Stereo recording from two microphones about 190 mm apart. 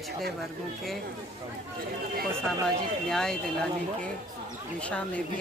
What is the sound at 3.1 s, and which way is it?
Speech, 5° left (ahead or behind).